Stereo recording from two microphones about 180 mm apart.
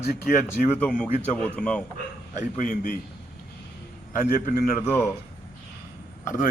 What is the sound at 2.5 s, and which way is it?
Speech, 45° left (ahead or behind).